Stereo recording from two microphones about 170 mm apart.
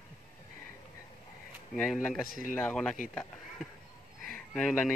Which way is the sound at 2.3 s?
55° left (ahead or behind).